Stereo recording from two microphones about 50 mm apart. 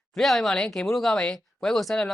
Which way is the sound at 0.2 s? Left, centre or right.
Centre.